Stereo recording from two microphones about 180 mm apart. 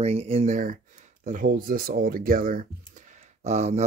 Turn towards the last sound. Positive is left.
turn(degrees=-40)  # may be behind; listen again after turning